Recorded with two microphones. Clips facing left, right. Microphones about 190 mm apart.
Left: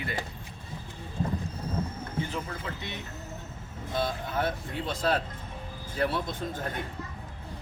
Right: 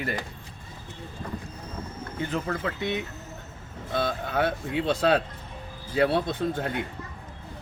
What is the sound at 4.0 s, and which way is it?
A man's voice, 65° right (ahead or behind).